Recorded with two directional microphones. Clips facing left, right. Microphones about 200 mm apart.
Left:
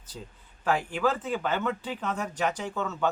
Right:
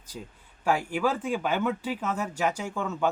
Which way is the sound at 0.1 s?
10° right (ahead or behind).